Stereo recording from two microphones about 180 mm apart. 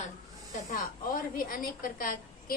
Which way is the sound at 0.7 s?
50° left (ahead or behind).